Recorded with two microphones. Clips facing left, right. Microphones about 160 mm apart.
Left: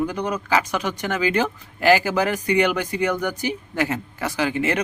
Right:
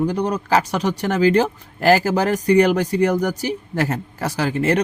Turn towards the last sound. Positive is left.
turn(degrees=-40)  # may be behind; listen again after turning